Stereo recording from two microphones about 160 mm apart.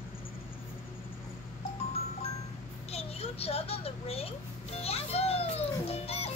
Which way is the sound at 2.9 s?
40° left (ahead or behind).